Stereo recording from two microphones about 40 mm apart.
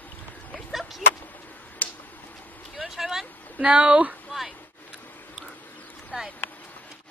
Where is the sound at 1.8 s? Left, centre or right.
Left.